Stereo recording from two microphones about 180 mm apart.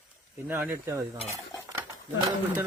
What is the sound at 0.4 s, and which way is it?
Speech, 15° right (ahead or behind).